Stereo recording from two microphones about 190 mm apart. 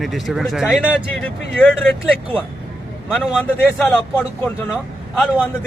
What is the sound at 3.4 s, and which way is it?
Speech, 10° left (ahead or behind).